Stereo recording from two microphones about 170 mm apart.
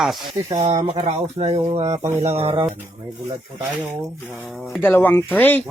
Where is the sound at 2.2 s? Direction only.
35° right (ahead or behind).